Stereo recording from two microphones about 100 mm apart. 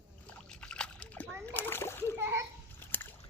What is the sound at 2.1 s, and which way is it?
Splash, 25° right (ahead or behind).